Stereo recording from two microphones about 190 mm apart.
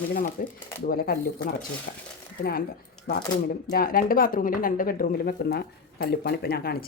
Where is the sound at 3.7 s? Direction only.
50° left (ahead or behind).